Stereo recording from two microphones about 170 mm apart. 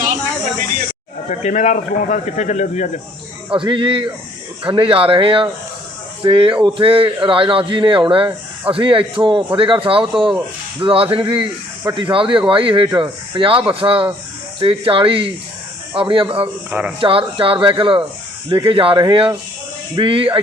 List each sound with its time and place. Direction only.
1.3 s speech: 45° left (ahead or behind)
3.5 s a man's voice: 30° right (ahead or behind)
16.6 s speech: 5° right (ahead or behind)
17.0 s a man's voice: 30° right (ahead or behind)